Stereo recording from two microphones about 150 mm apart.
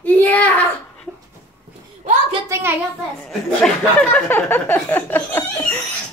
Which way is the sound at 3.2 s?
5° left (ahead or behind).